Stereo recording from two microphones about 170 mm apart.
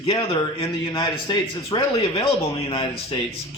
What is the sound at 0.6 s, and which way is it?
Speech, 20° left (ahead or behind).